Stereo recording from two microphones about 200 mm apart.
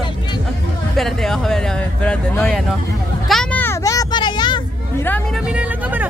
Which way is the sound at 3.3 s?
5° left (ahead or behind).